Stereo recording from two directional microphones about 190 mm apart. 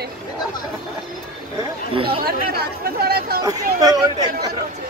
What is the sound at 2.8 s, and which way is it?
Speech, 55° right (ahead or behind).